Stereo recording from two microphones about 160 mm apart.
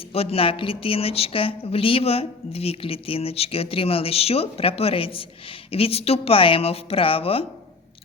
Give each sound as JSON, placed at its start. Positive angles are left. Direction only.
{"t": 0.1, "sound": "a woman's voice", "side_deg": 40}